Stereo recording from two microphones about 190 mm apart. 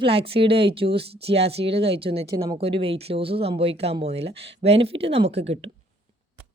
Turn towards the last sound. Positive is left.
turn(degrees=-35)  # may be behind; listen again after turning